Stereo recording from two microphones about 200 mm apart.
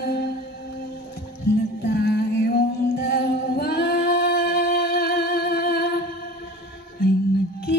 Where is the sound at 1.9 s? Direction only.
55° left (ahead or behind).